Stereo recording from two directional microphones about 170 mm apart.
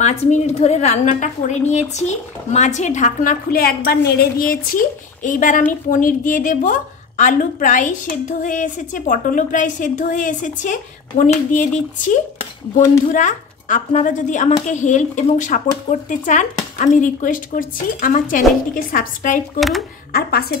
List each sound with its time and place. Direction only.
0.0 s a woman's voice: 40° left (ahead or behind)
20.1 s a woman's voice: 65° left (ahead or behind)